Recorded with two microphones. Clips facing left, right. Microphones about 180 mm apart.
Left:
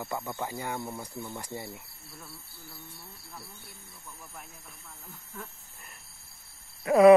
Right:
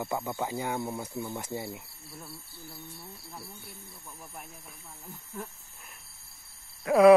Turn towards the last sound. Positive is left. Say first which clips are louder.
# left 1 dB
turn(degrees=0)  # may be behind; listen again after turning